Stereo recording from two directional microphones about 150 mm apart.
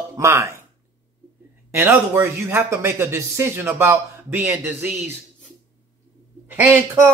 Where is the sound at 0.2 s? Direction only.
20° right (ahead or behind).